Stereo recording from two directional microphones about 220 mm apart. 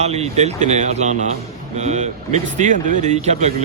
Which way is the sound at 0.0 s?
30° right (ahead or behind).